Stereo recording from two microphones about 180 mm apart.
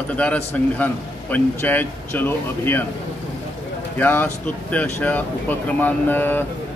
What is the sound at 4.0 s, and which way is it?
A man's voice, 10° left (ahead or behind).